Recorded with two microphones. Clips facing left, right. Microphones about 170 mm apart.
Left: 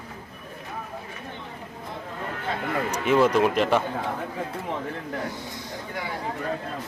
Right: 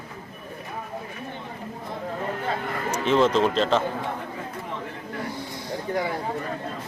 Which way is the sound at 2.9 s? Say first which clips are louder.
Even; 10° left (ahead or behind).